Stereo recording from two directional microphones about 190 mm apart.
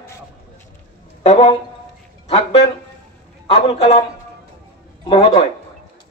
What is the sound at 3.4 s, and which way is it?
A man's voice, 30° left (ahead or behind).